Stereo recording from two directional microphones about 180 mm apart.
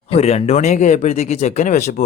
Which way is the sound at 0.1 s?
35° left (ahead or behind).